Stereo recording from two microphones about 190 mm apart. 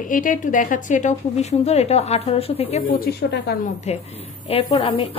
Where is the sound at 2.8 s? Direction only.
50° left (ahead or behind).